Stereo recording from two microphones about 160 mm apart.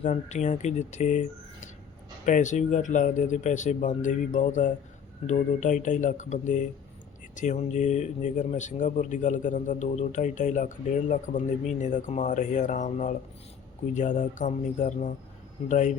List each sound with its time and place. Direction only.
0.0 s speech: 45° left (ahead or behind)